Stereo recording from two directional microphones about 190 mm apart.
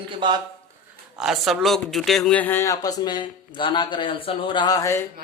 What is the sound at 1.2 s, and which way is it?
Speech, centre (ahead or behind).